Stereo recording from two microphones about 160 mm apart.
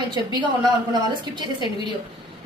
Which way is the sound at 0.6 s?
25° right (ahead or behind).